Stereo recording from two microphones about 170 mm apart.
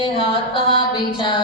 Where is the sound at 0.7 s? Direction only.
30° left (ahead or behind).